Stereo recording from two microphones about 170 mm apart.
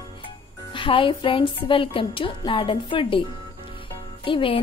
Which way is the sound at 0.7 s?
30° left (ahead or behind).